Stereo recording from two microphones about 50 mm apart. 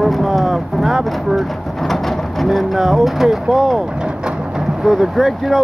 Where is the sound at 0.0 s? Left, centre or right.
Centre.